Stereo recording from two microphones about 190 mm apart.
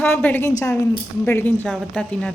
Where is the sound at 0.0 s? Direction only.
10° left (ahead or behind).